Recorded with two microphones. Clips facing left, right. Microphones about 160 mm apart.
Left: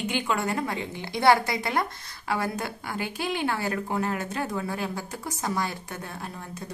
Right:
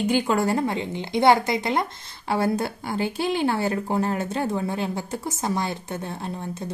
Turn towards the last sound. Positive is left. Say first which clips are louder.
# right 6 dB
turn(degrees=-25)  # may be behind; listen again after turning